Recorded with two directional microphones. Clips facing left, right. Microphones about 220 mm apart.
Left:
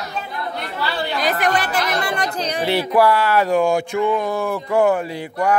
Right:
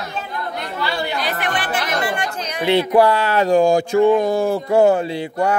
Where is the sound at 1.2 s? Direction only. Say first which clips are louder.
Left 4 dB; 45° left (ahead or behind).